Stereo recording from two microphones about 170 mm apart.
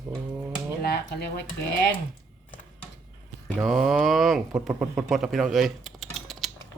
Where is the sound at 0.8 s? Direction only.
70° left (ahead or behind).